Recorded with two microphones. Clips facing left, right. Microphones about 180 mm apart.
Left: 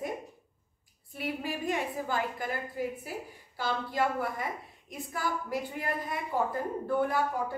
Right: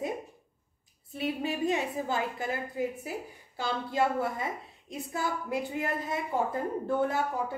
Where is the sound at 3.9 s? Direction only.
25° right (ahead or behind).